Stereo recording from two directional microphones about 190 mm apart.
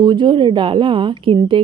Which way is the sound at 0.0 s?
25° right (ahead or behind).